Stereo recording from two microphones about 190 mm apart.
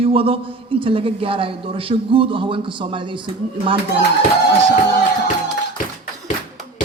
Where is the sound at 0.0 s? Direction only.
30° right (ahead or behind).